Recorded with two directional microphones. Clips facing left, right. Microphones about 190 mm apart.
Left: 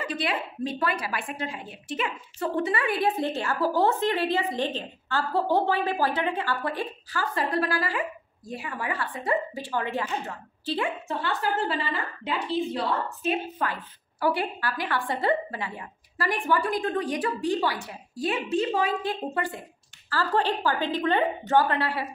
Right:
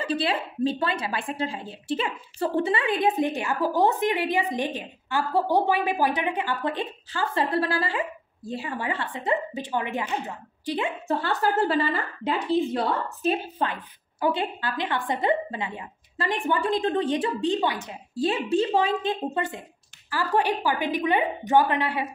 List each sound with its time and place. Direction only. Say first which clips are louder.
0.0 s a woman's voice: right 3 dB; 30° right (ahead or behind)
11.1 s a woman's voice: right 3 dB; 40° right (ahead or behind)
13.6 s a woman's voice: right 2 dB; 30° right (ahead or behind)